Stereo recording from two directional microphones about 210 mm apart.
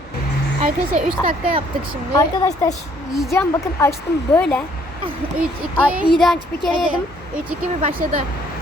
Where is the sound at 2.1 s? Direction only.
15° left (ahead or behind).